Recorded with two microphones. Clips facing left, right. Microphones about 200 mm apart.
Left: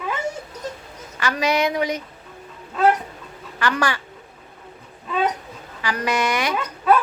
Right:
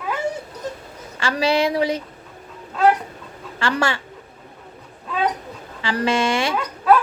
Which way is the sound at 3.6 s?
25° right (ahead or behind).